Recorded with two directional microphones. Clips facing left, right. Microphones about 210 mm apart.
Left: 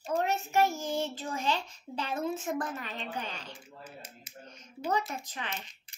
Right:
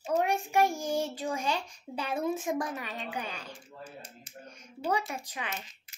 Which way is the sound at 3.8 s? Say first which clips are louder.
Right 2 dB; 5° left (ahead or behind).